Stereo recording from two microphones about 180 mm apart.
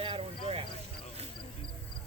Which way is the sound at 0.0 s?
30° right (ahead or behind).